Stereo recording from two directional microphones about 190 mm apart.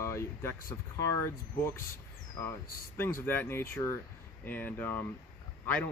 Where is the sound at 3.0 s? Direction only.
10° left (ahead or behind).